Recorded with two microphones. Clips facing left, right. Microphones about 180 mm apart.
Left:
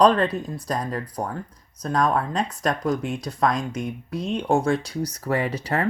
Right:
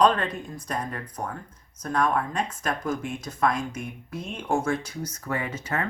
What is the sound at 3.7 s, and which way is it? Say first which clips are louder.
Speech: left 6 dB; 70° left (ahead or behind).